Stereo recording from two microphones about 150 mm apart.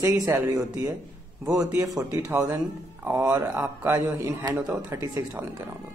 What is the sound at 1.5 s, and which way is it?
Speech, 20° right (ahead or behind).